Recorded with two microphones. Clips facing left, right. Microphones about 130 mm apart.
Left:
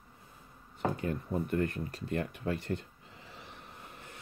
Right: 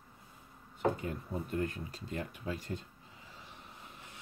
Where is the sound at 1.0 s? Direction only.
65° left (ahead or behind).